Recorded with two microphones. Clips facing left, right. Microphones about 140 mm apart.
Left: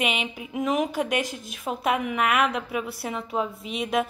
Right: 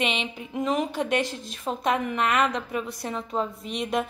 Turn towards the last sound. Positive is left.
turn(degrees=5)  # may be behind; listen again after turning